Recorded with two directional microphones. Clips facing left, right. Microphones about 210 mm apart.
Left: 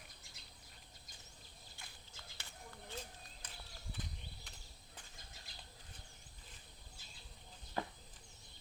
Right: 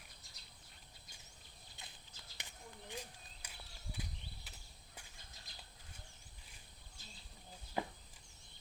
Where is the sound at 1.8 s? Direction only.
20° right (ahead or behind).